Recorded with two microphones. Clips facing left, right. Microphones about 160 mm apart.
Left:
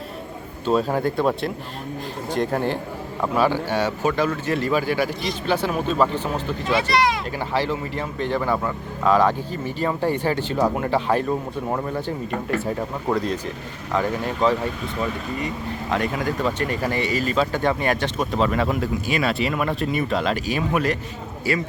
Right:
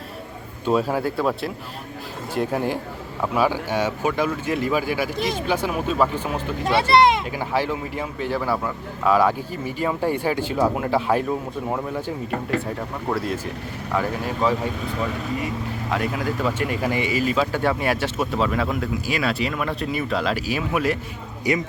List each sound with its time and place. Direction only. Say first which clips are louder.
0.6 s speech: left 1 dB; 5° right (ahead or behind)
2.3 s speech: left 1 dB; 10° right (ahead or behind)
6.7 s speech: right 5 dB; 30° right (ahead or behind)
7.3 s speech: even; 10° right (ahead or behind)
13.1 s speech: left 2 dB; 5° left (ahead or behind)
14.4 s speech: left 2 dB; 5° right (ahead or behind)
15.9 s speech: left 1 dB; 5° right (ahead or behind)
21.5 s speech: right 1 dB; 20° right (ahead or behind)